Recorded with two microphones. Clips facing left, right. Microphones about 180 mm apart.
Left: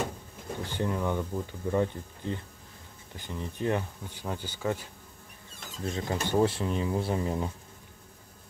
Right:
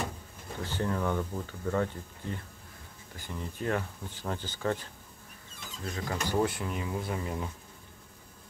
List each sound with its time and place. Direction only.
0.7 s speech: 15° left (ahead or behind)
5.9 s speech: 25° left (ahead or behind)